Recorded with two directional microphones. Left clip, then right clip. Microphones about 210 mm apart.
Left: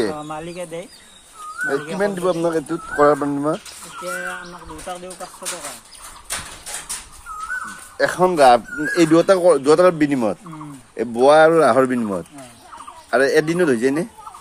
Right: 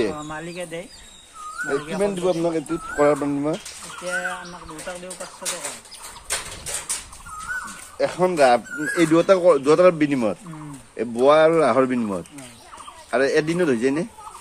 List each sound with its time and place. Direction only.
0.0 s speech: 20° left (ahead or behind)
1.7 s speech: 20° left (ahead or behind)
8.0 s speech: 30° left (ahead or behind)